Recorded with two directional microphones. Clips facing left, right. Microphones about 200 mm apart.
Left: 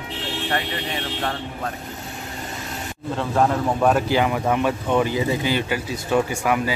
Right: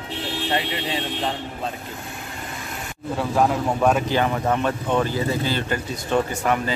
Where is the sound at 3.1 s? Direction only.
5° right (ahead or behind).